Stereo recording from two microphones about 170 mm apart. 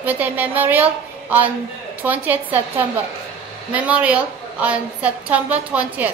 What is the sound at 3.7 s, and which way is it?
A woman's voice, 10° right (ahead or behind).